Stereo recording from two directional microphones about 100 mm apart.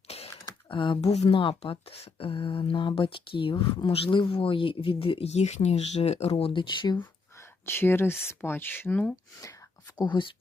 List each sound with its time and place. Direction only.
0.1 s a sound: 90° left
0.7 s speech: 55° left (ahead or behind)
1.1 s speech: 80° left; by 7.0 s 50° left (ahead or behind)
7.6 s speech: 25° left (ahead or behind)
10.0 s speech: 55° left (ahead or behind)